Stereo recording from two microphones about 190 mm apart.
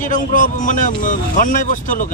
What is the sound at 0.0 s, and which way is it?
Speech, 45° left (ahead or behind).